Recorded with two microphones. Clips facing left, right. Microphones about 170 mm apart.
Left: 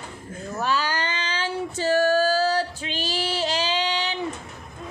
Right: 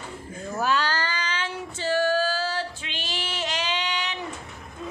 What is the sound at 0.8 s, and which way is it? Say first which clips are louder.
Female singing: left 1 dB; 20° left (ahead or behind).